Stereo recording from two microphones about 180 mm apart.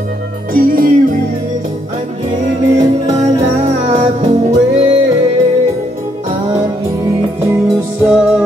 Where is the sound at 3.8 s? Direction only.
40° right (ahead or behind).